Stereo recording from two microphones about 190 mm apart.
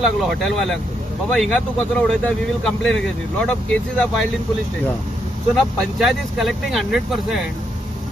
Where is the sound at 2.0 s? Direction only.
5° left (ahead or behind).